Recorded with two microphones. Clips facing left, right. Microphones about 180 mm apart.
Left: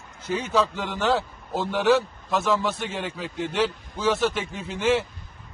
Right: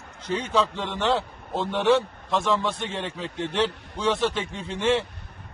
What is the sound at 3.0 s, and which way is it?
Speech, 25° right (ahead or behind).